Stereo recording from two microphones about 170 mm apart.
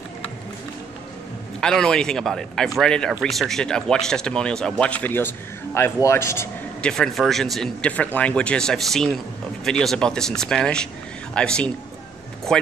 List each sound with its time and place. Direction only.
1.6 s a man's voice: 5° left (ahead or behind)
6.9 s speech: 5° left (ahead or behind)